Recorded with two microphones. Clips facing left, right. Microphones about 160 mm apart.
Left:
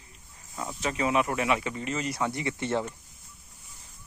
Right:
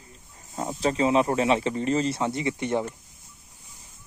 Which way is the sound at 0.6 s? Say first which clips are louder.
Right 6 dB; 35° right (ahead or behind).